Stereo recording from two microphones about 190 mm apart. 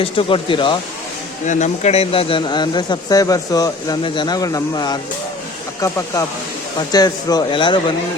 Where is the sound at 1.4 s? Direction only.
40° left (ahead or behind).